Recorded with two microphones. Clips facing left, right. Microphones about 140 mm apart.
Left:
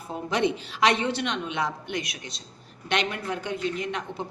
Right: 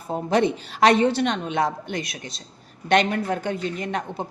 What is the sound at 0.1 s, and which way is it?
A woman's voice, 40° right (ahead or behind).